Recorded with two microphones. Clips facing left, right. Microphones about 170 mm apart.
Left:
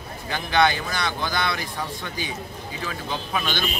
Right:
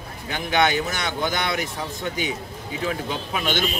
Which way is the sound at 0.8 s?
20° right (ahead or behind).